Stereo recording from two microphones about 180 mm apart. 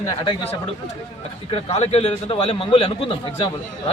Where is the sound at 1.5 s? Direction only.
35° left (ahead or behind).